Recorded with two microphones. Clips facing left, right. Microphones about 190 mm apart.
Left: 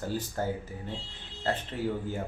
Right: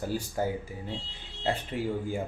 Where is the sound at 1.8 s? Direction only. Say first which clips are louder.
Even; 10° right (ahead or behind).